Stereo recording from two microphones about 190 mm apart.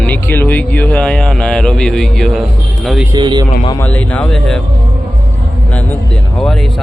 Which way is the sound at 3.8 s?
10° left (ahead or behind).